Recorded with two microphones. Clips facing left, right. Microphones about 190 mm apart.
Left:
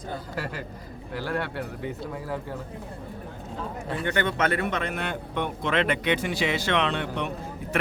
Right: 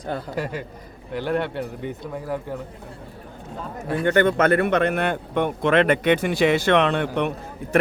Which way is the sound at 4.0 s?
50° right (ahead or behind).